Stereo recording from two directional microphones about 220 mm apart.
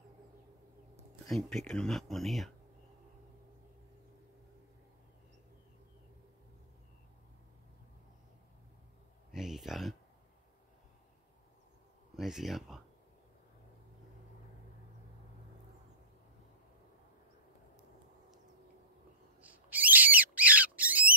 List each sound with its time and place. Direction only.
1.3 s speech: centre (ahead or behind)
9.3 s a sound: centre (ahead or behind)
12.2 s speech: centre (ahead or behind)
19.4 s owl: 5° right (ahead or behind)